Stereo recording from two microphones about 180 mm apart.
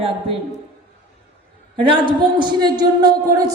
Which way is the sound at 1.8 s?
25° right (ahead or behind).